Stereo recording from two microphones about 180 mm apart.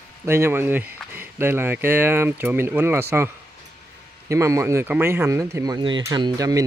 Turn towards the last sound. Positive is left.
turn(degrees=-20)  # may be behind; listen again after turning